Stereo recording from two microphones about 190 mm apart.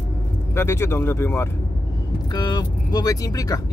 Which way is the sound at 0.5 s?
15° left (ahead or behind).